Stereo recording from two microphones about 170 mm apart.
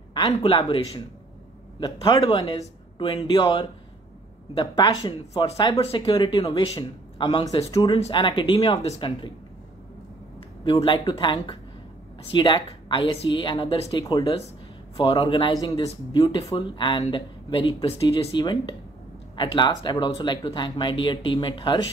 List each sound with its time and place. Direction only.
0.1 s speech: 25° left (ahead or behind)
10.6 s speech: 30° left (ahead or behind)